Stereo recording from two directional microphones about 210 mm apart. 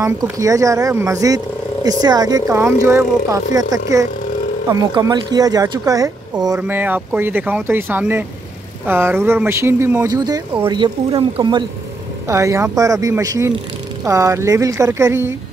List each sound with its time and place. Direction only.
0.0 s speech: 15° right (ahead or behind)
10.8 s speech: 25° right (ahead or behind)
12.3 s speech: 15° right (ahead or behind)